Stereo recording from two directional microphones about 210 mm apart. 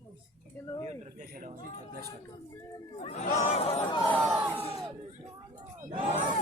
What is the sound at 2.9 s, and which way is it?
Speech, 30° left (ahead or behind).